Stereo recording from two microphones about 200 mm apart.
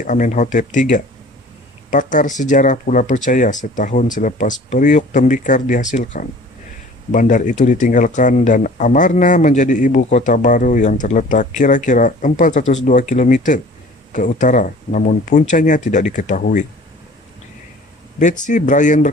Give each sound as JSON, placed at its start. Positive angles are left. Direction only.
{"t": 0.0, "sound": "speech", "side_deg": 40}
{"t": 18.2, "sound": "speech", "side_deg": 40}